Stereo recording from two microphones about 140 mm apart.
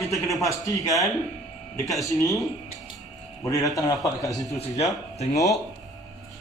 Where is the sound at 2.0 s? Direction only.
20° left (ahead or behind).